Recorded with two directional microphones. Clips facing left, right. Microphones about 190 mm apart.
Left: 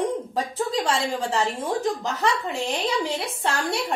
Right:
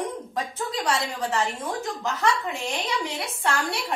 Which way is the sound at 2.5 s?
30° left (ahead or behind).